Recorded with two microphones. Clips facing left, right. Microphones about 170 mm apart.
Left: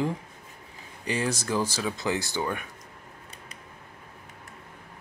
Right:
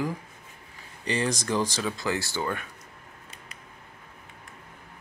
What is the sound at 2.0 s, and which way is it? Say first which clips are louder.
Speech: left 2 dB; 20° left (ahead or behind).